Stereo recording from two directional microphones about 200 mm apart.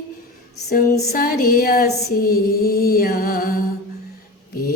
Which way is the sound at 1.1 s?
45° left (ahead or behind).